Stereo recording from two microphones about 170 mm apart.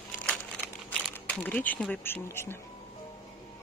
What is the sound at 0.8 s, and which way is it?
Speech, 10° left (ahead or behind).